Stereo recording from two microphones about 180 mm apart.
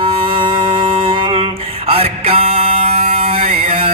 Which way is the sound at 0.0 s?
30° right (ahead or behind).